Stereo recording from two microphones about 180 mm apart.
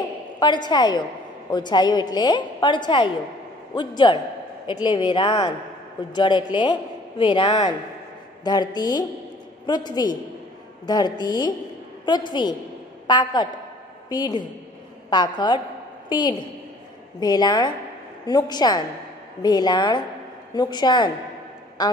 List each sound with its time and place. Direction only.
0.4 s a woman's voice: 25° left (ahead or behind)